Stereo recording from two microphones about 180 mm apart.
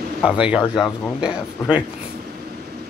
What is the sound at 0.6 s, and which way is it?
Speech, 25° left (ahead or behind).